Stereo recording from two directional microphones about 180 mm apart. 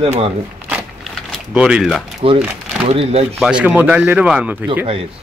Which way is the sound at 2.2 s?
30° right (ahead or behind).